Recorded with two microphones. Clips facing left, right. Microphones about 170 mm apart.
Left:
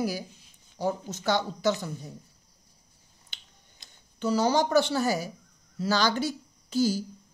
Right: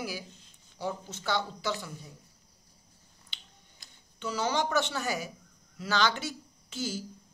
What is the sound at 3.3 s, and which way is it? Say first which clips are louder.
Finger snapping: right 1 dB; 45° left (ahead or behind).